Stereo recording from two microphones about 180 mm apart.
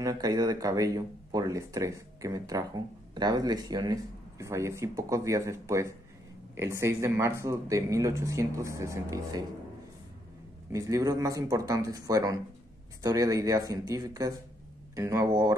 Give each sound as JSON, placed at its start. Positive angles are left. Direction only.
{"t": 0.0, "sound": "speech", "side_deg": -20}
{"t": 10.7, "sound": "speech", "side_deg": -20}